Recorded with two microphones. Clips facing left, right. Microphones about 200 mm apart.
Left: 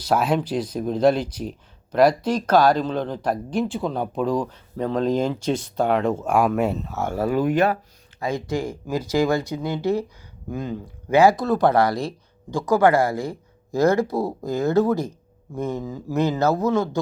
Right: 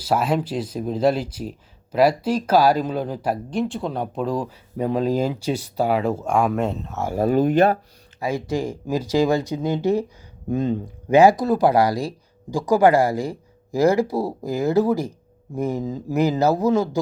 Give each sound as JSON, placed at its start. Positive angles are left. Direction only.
{"t": 0.0, "sound": "speech", "side_deg": 0}
{"t": 7.3, "sound": "speech", "side_deg": -35}
{"t": 8.2, "sound": "speech", "side_deg": -10}
{"t": 12.5, "sound": "speech", "side_deg": -35}
{"t": 12.7, "sound": "speech", "side_deg": -15}
{"t": 14.8, "sound": "speech", "side_deg": -30}
{"t": 15.5, "sound": "speech", "side_deg": -10}